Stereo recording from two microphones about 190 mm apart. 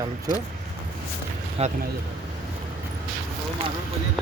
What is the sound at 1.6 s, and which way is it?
Speech, 35° right (ahead or behind).